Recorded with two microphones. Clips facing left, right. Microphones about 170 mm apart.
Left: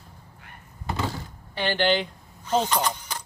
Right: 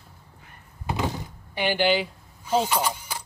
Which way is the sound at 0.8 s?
15° right (ahead or behind).